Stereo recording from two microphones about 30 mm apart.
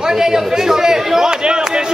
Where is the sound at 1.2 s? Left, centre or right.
Right.